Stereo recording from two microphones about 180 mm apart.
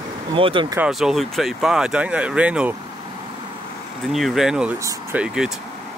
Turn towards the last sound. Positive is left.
turn(degrees=-10)  # may be behind; listen again after turning